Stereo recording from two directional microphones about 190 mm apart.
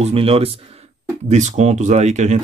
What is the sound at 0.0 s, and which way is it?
Speech, 30° right (ahead or behind).